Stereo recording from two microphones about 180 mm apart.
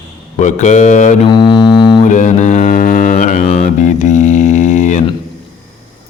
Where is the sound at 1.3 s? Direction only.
25° left (ahead or behind).